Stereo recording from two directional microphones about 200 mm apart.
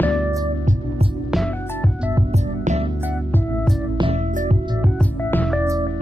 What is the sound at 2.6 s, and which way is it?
Music, 35° right (ahead or behind).